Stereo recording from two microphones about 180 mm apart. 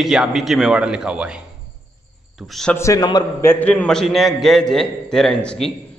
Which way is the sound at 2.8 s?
20° left (ahead or behind).